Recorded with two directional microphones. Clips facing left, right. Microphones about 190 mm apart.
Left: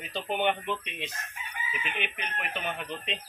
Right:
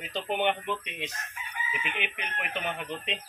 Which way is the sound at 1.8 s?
15° right (ahead or behind).